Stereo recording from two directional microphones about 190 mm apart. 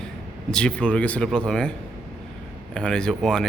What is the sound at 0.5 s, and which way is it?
Speech, 5° left (ahead or behind).